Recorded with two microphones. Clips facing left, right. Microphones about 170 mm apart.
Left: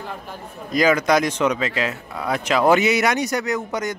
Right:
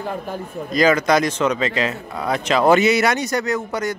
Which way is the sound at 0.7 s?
15° left (ahead or behind).